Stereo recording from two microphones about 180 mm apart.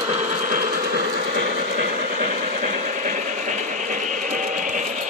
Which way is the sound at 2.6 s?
45° right (ahead or behind).